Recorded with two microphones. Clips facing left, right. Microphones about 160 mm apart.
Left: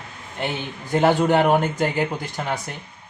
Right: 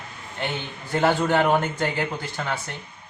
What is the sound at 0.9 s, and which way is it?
Speech, 15° left (ahead or behind).